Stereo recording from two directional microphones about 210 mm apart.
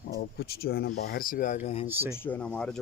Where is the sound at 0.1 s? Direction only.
50° left (ahead or behind); by 1.9 s 30° left (ahead or behind).